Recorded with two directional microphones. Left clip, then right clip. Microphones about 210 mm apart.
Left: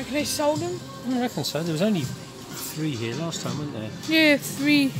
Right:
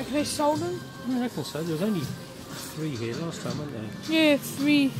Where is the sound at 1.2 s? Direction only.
50° left (ahead or behind).